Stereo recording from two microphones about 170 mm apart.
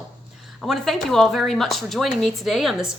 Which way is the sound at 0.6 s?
Centre (ahead or behind).